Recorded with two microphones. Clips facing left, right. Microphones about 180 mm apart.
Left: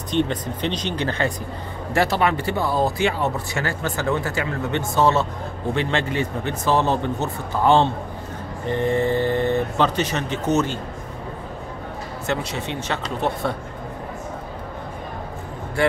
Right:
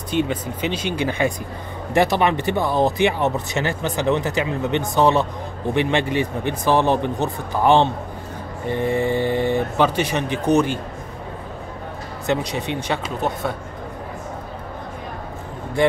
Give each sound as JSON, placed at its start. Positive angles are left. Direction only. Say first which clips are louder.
{"t": 0.1, "sound": "speech", "louder": "even", "side_deg": -5}
{"t": 12.3, "sound": "speech", "louder": "right 4 dB", "side_deg": -15}
{"t": 13.3, "sound": "speech", "louder": "left 1 dB", "side_deg": 0}